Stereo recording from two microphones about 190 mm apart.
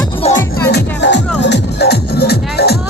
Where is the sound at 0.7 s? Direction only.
65° left (ahead or behind).